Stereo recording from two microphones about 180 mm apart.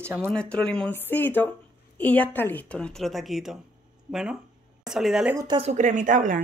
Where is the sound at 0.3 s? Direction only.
5° left (ahead or behind).